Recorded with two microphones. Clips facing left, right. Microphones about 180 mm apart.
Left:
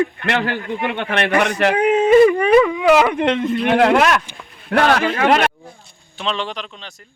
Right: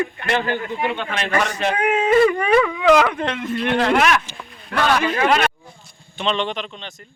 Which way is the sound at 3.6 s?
70° left (ahead or behind).